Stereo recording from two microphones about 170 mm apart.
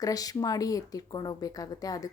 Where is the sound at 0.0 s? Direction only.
20° left (ahead or behind).